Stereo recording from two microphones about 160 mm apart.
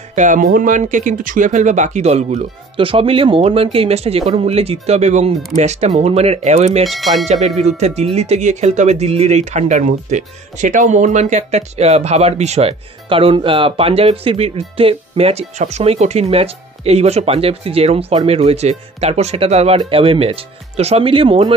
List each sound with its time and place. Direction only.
0.1 s speech: 55° right (ahead or behind)
6.8 s speech: centre (ahead or behind)
7.2 s speech: 45° right (ahead or behind)